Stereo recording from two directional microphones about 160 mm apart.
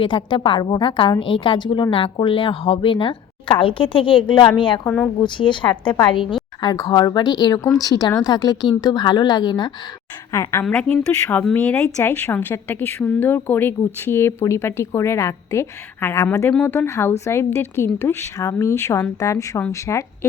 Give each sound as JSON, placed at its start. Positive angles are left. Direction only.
{"t": 0.0, "sound": "a woman's voice", "side_deg": 30}
{"t": 10.3, "sound": "a woman's voice", "side_deg": 15}